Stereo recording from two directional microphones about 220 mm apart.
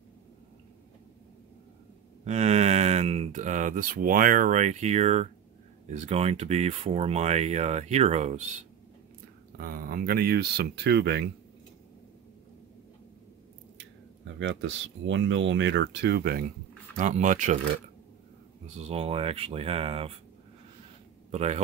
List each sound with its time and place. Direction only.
2.2 s speech: 30° right (ahead or behind)
9.6 s speech: 40° right (ahead or behind)
14.4 s speech: 60° right (ahead or behind)
16.9 s speech: 35° right (ahead or behind)
18.8 s speech: 25° right (ahead or behind)
21.3 s speech: 30° right (ahead or behind)